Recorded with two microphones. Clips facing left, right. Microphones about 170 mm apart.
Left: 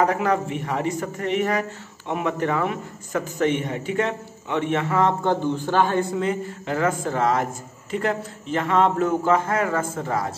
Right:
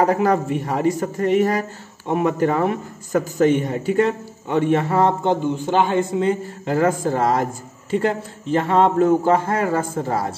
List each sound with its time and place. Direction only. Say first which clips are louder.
0.0 s a man's voice: right 3 dB; 35° right (ahead or behind)
5.2 s a man's voice: right 2 dB; 15° right (ahead or behind)
6.2 s a man's voice: right 4 dB; 35° right (ahead or behind)